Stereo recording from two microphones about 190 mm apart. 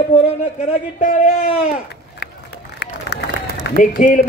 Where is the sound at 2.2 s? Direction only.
65° left (ahead or behind).